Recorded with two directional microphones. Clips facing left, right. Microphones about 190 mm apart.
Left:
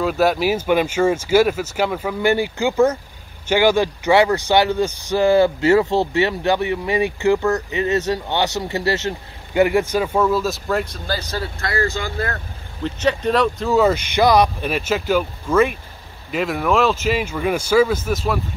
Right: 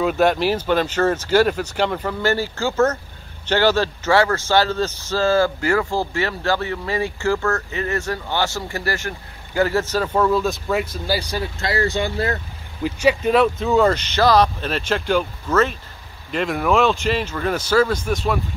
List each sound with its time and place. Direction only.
0.0 s speech: centre (ahead or behind); by 12.4 s 20° right (ahead or behind)
12.8 s speech: 5° right (ahead or behind)